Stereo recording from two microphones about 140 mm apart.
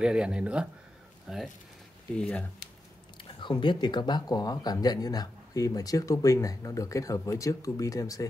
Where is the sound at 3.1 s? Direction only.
35° left (ahead or behind).